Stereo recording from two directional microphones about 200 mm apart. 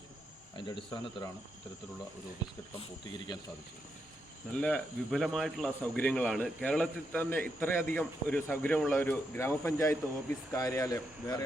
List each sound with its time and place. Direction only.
0.5 s speech: 25° left (ahead or behind)
2.7 s speech: 20° left (ahead or behind)
4.5 s speech: 5° left (ahead or behind)